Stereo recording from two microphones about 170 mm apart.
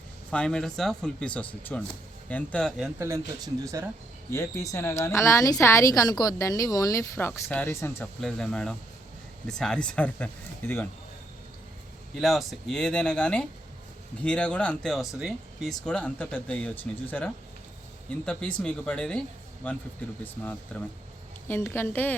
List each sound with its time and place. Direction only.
0.3 s speech: 5° left (ahead or behind)
3.0 s speech: 20° right (ahead or behind)
4.3 s speech: 15° left (ahead or behind)
8.2 s speech: 5° left (ahead or behind)
12.2 s speech: centre (ahead or behind)